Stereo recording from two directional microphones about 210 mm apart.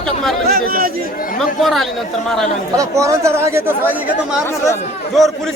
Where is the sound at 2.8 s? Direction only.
15° right (ahead or behind).